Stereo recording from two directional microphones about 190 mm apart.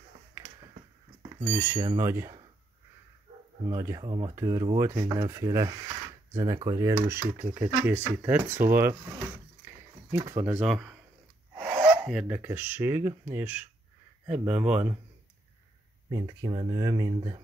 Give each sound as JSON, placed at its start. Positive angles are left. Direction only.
{"t": 1.4, "sound": "speech", "side_deg": -15}
{"t": 3.6, "sound": "speech", "side_deg": -15}
{"t": 14.4, "sound": "speech", "side_deg": -30}
{"t": 14.7, "sound": "speech", "side_deg": -10}
{"t": 16.1, "sound": "speech", "side_deg": -15}